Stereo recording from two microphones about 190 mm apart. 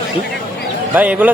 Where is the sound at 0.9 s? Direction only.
10° right (ahead or behind).